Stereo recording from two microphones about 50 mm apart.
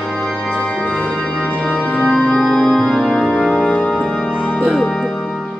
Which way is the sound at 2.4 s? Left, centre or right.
Centre.